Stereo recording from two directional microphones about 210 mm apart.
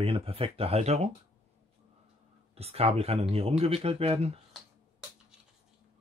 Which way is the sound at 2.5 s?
30° right (ahead or behind).